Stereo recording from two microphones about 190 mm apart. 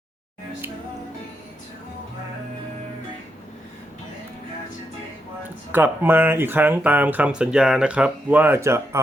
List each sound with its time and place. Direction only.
5.7 s speech: 10° right (ahead or behind)